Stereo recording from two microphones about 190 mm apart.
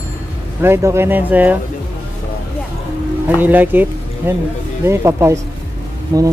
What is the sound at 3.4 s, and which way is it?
Speech, 10° right (ahead or behind).